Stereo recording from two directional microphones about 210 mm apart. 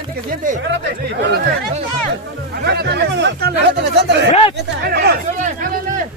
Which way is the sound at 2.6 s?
50° right (ahead or behind).